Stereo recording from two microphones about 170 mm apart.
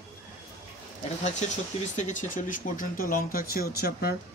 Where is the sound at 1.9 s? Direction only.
45° left (ahead or behind).